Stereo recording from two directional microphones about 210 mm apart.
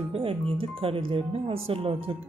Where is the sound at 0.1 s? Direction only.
25° right (ahead or behind).